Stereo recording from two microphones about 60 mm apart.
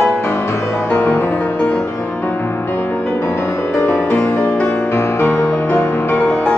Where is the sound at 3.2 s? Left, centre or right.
Left.